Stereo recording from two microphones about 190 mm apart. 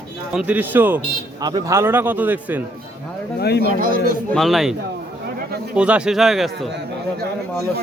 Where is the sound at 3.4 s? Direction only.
60° left (ahead or behind).